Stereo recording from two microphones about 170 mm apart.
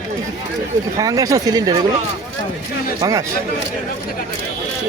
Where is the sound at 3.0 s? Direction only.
20° right (ahead or behind).